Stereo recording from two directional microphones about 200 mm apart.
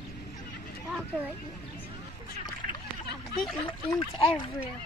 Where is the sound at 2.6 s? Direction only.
45° right (ahead or behind).